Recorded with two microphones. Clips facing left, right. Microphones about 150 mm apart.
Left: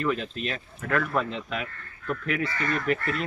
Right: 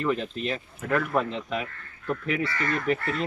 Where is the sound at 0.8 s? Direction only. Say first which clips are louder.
Right 1 dB; 15° right (ahead or behind).